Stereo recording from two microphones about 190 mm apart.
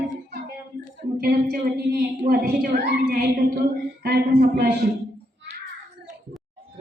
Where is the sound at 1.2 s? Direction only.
55° right (ahead or behind).